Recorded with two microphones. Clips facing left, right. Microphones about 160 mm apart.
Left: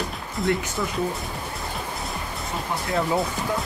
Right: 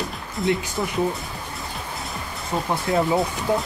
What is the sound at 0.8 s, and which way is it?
Speech, 30° right (ahead or behind).